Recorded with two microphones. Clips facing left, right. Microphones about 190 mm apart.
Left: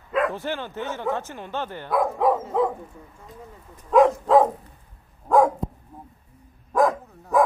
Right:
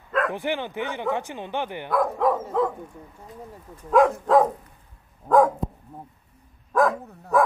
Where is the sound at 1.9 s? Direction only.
Centre (ahead or behind).